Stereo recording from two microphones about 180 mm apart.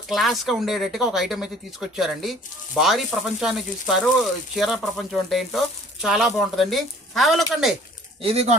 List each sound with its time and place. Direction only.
0.1 s speech: centre (ahead or behind)
8.2 s speech: 35° right (ahead or behind)